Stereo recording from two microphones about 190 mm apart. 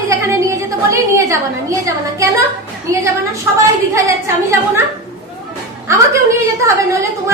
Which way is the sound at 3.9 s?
15° right (ahead or behind).